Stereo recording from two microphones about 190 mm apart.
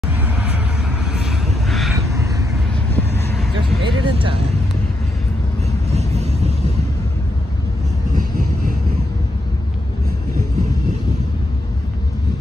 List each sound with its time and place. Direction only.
0.2 s vehicle: 5° right (ahead or behind)
2.1 s vehicle: 15° right (ahead or behind)
2.7 s vehicle: 10° left (ahead or behind)
3.8 s vehicle: 25° right (ahead or behind)
5.9 s vehicle: 35° right (ahead or behind)